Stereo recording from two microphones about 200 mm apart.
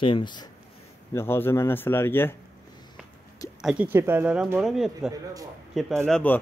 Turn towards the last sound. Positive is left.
turn(degrees=5)  # may be behind; listen again after turning